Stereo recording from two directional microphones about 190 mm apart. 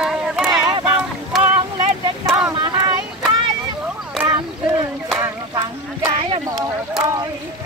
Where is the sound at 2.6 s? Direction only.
25° right (ahead or behind).